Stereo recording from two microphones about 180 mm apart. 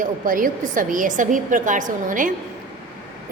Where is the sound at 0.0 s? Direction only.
50° right (ahead or behind).